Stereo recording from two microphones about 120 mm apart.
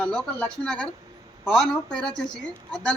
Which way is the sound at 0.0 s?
5° left (ahead or behind).